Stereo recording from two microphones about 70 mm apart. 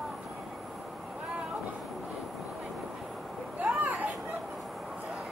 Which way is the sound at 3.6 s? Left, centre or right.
Right.